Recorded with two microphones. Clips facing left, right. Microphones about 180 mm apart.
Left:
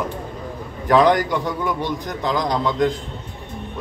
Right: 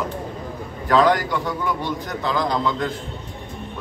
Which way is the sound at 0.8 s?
20° left (ahead or behind).